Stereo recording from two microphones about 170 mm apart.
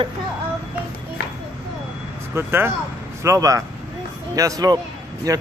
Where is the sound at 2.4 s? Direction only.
15° right (ahead or behind).